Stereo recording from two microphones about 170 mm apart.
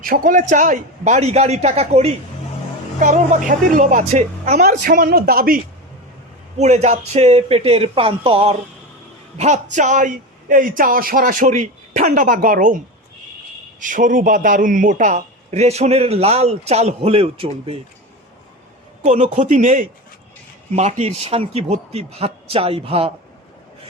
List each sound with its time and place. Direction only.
0.0 s a man's voice: 55° right (ahead or behind); by 2.1 s 40° right (ahead or behind)
3.8 s a man's voice: 45° right (ahead or behind)
6.6 s a man's voice: 40° right (ahead or behind)
9.4 s a man's voice: 45° right (ahead or behind)
19.0 s a man's voice: 45° right (ahead or behind)